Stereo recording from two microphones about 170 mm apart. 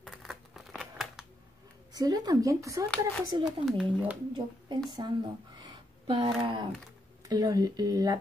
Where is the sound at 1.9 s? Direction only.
20° right (ahead or behind).